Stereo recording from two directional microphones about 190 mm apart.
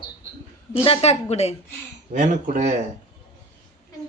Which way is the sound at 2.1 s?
40° right (ahead or behind).